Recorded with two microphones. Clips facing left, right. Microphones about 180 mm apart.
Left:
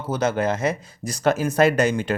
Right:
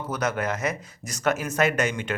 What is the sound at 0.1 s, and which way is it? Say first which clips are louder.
Speech: left 6 dB; 30° left (ahead or behind).